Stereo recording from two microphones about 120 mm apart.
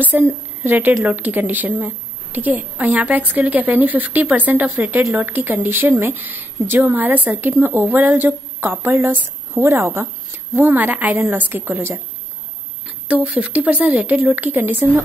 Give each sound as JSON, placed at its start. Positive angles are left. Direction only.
{"t": 0.0, "sound": "a woman's voice", "side_deg": -15}
{"t": 12.8, "sound": "a woman's voice", "side_deg": -10}